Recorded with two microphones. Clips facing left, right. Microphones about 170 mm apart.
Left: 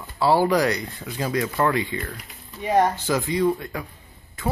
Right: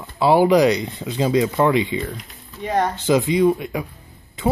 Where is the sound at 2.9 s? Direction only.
20° right (ahead or behind).